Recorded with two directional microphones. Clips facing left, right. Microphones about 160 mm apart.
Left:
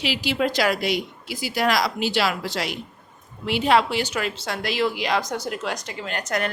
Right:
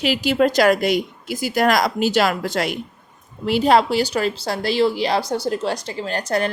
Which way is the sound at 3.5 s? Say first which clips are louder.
Right 4 dB; 40° right (ahead or behind).